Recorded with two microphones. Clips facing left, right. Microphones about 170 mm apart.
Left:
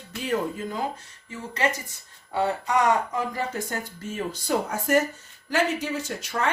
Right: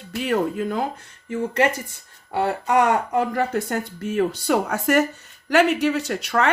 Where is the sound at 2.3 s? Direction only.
60° right (ahead or behind).